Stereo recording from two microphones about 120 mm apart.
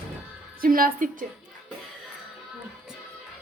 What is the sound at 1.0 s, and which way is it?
Speech, 90° right.